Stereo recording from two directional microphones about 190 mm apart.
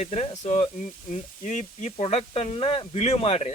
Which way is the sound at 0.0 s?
35° left (ahead or behind).